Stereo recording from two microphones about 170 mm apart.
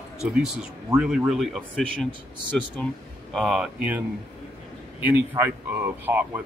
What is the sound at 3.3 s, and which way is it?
Speech, centre (ahead or behind).